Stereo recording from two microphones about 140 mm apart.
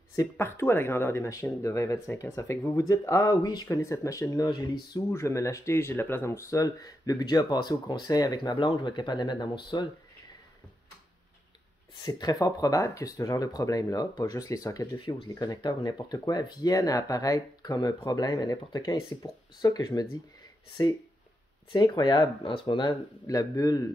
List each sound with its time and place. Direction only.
0.1 s speech: 20° left (ahead or behind)
12.0 s speech: 30° left (ahead or behind)
22.8 s speech: 25° left (ahead or behind)